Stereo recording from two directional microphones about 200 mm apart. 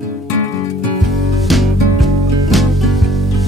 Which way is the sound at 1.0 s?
Centre (ahead or behind).